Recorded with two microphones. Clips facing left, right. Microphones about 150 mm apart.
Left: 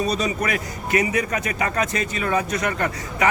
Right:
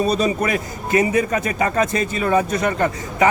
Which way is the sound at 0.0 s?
35° right (ahead or behind).